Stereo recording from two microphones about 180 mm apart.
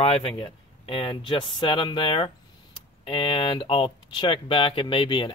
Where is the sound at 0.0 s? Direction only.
35° left (ahead or behind).